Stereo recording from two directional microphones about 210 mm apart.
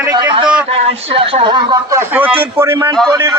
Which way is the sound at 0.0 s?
20° right (ahead or behind).